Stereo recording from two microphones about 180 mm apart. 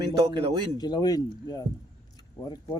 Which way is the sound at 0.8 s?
25° left (ahead or behind).